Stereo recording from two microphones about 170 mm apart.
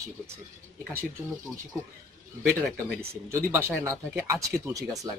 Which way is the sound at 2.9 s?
15° right (ahead or behind).